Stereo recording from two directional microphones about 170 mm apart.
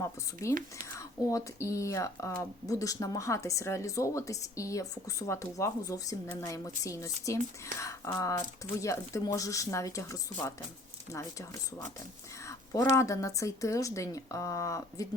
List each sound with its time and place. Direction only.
0.9 s speech: 20° left (ahead or behind)
12.5 s a sound: 15° left (ahead or behind)
13.0 s speech: 20° left (ahead or behind)